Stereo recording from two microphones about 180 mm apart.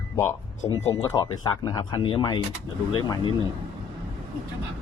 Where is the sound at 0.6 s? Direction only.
20° left (ahead or behind).